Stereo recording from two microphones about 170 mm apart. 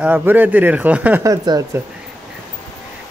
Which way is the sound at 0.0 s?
10° right (ahead or behind).